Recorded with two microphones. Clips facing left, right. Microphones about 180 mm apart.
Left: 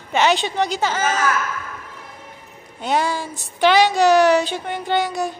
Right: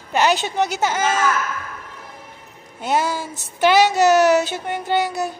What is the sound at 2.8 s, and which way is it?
A man's voice, 5° right (ahead or behind).